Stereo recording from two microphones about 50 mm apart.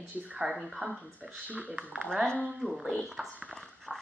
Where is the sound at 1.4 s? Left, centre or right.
Right.